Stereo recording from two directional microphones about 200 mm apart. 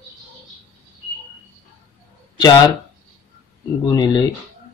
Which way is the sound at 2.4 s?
20° left (ahead or behind).